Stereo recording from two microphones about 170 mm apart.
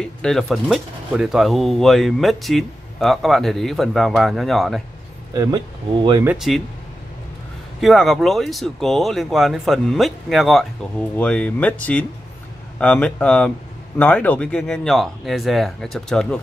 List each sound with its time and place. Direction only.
0.0 s speech: 5° left (ahead or behind)
5.3 s speech: 20° right (ahead or behind)
6.2 s speech: centre (ahead or behind)
7.8 s speech: centre (ahead or behind)